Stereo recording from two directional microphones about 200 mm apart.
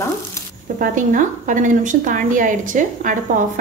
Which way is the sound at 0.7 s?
40° right (ahead or behind).